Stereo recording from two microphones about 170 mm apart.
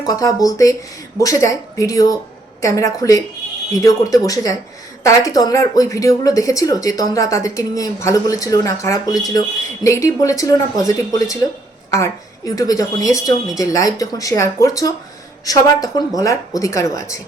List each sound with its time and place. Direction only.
0.0 s speech: 20° left (ahead or behind)